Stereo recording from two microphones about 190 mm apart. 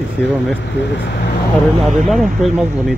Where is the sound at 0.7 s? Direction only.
65° left (ahead or behind).